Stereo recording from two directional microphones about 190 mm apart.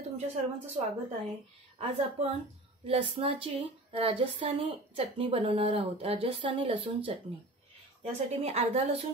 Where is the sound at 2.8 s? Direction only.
30° right (ahead or behind).